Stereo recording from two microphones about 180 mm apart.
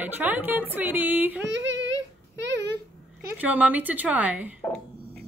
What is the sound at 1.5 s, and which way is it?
Child singing, 90° right.